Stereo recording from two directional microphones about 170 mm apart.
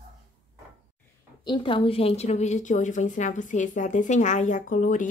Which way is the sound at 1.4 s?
30° left (ahead or behind).